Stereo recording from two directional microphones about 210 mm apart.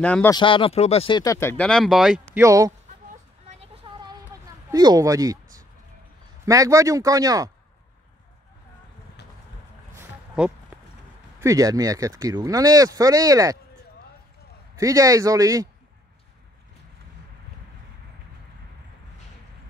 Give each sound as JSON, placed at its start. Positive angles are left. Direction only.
{"t": 0.0, "sound": "speech", "side_deg": 5}
{"t": 0.3, "sound": "speech", "side_deg": 25}
{"t": 2.4, "sound": "speech", "side_deg": -15}
{"t": 3.4, "sound": "a sound", "side_deg": -30}
{"t": 6.4, "sound": "speech", "side_deg": -15}
{"t": 9.9, "sound": "a sound", "side_deg": -5}
{"t": 11.4, "sound": "speech", "side_deg": -15}
{"t": 14.8, "sound": "speech", "side_deg": -15}